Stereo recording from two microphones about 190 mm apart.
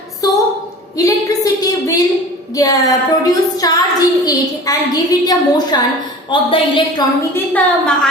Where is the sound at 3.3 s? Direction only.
20° left (ahead or behind).